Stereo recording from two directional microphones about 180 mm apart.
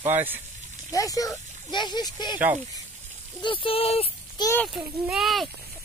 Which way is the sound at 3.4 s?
30° left (ahead or behind).